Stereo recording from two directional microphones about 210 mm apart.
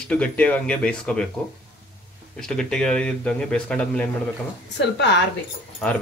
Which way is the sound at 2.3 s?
5° left (ahead or behind).